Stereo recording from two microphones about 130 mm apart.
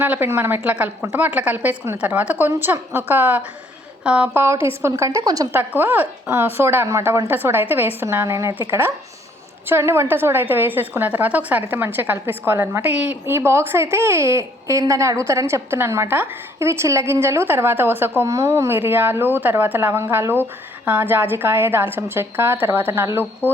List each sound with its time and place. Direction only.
0.0 s a woman's voice: 15° right (ahead or behind)
4.4 s a woman's voice: 20° right (ahead or behind)
5.5 s a woman's voice: 15° right (ahead or behind)
9.6 s a woman's voice: 20° right (ahead or behind)